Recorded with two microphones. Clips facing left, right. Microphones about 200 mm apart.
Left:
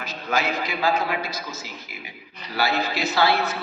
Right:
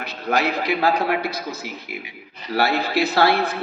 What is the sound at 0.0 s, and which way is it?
A man's voice, 60° right (ahead or behind).